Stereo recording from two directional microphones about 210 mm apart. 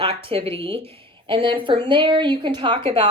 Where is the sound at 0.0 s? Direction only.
25° right (ahead or behind).